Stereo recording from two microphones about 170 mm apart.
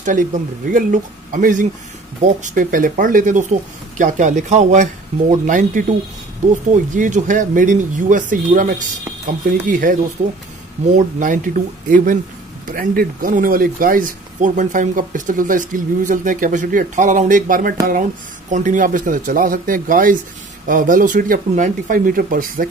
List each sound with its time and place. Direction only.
0.0 s speech: 50° right (ahead or behind)